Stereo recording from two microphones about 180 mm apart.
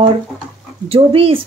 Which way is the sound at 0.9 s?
30° right (ahead or behind).